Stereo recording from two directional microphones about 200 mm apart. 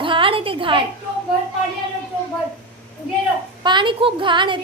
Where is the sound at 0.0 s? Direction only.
25° right (ahead or behind).